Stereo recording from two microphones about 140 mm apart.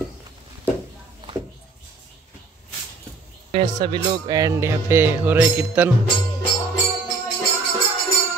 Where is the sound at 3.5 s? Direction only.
35° right (ahead or behind); by 5.9 s 15° right (ahead or behind).